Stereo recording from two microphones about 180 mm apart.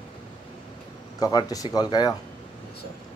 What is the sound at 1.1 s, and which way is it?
Speech, 20° left (ahead or behind).